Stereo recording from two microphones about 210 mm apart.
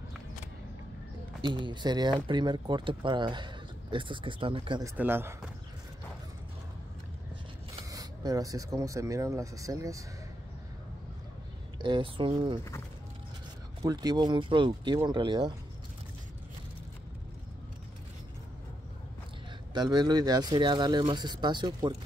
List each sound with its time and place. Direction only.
1.7 s speech: 20° right (ahead or behind)
4.9 s speech: 10° right (ahead or behind)
7.9 s speech: 20° right (ahead or behind)
11.8 s speech: 25° right (ahead or behind)
13.8 s speech: 20° right (ahead or behind)
19.7 s speech: 20° right (ahead or behind)